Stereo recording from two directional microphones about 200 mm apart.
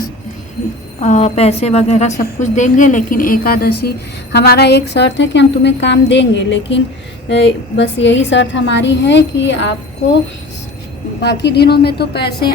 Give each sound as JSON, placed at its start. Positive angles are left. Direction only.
{"t": 0.9, "sound": "a woman's voice", "side_deg": 35}
{"t": 11.2, "sound": "a woman's voice", "side_deg": 55}